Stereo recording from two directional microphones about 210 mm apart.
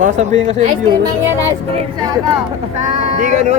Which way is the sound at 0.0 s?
35° right (ahead or behind).